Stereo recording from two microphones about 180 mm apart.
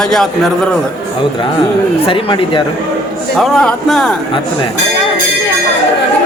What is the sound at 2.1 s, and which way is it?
Speech, 30° left (ahead or behind).